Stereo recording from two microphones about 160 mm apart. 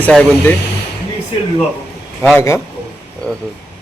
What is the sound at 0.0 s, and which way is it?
Speech, 10° left (ahead or behind).